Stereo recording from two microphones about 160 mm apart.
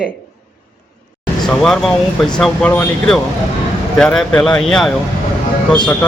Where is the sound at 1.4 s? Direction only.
Centre (ahead or behind).